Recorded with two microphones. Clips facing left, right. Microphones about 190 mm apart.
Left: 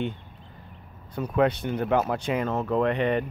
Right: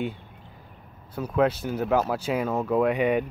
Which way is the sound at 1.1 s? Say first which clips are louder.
Even; 5° right (ahead or behind).